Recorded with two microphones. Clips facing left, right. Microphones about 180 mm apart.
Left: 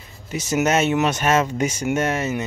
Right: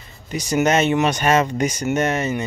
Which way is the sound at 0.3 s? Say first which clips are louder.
Right 2 dB; 5° left (ahead or behind).